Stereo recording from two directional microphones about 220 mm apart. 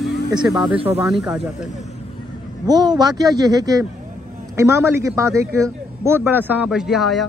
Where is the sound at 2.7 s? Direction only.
20° right (ahead or behind); by 7.2 s centre (ahead or behind).